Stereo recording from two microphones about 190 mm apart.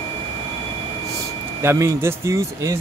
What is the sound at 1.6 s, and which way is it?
Speech, 15° right (ahead or behind).